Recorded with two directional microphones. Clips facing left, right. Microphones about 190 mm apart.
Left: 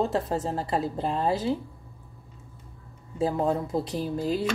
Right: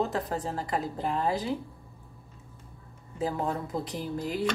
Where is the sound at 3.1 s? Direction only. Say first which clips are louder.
Left 5 dB; 25° left (ahead or behind).